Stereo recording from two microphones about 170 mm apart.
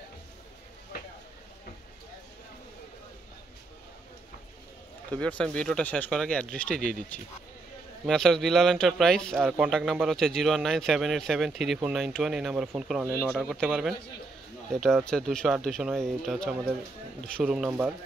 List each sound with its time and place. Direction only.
5.1 s speech: 5° left (ahead or behind); by 17.9 s 10° right (ahead or behind)